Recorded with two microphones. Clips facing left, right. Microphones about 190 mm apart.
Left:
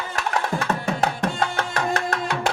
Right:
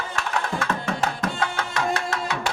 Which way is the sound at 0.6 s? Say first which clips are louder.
Left 2 dB; 35° left (ahead or behind).